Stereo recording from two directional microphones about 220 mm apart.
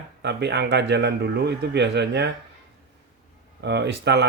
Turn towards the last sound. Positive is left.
turn(degrees=-50)  # may be behind; listen again after turning